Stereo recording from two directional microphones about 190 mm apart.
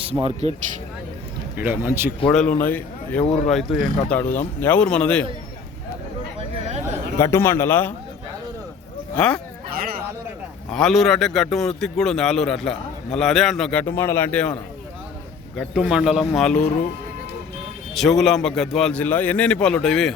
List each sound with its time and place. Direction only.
0.0 s speech: 30° right (ahead or behind)
1.5 s speech: 10° right (ahead or behind)
2.3 s a man's voice: 5° left (ahead or behind)
3.2 s speech: 35° left (ahead or behind)
3.5 s a man's voice: centre (ahead or behind)
6.7 s a sound: 35° right (ahead or behind)
7.2 s a man's voice: 15° left (ahead or behind)
9.1 s a man's voice: 5° left (ahead or behind)
9.7 s a sound: 50° right (ahead or behind)
10.7 s a man's voice: centre (ahead or behind)
17.9 s a man's voice: centre (ahead or behind)